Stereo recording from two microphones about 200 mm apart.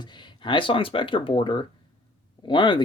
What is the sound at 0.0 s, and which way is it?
Speech, 20° left (ahead or behind).